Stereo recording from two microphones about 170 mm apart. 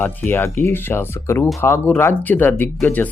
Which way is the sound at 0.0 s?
10° left (ahead or behind).